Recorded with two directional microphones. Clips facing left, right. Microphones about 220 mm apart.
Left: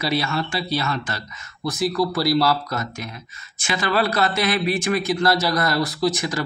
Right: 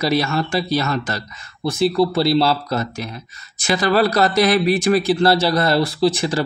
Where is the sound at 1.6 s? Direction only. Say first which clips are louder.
Right 5 dB; 30° right (ahead or behind).